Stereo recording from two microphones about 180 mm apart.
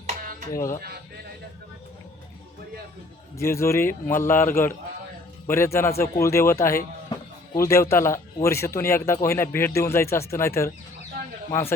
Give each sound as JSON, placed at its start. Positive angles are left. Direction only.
{"t": 0.1, "sound": "music", "side_deg": -45}
{"t": 3.3, "sound": "a man's voice", "side_deg": 15}